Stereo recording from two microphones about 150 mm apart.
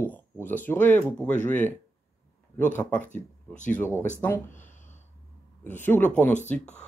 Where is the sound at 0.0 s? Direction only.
10° left (ahead or behind).